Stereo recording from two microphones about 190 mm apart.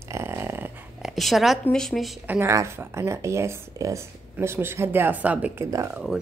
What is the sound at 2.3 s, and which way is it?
Speech, 15° right (ahead or behind).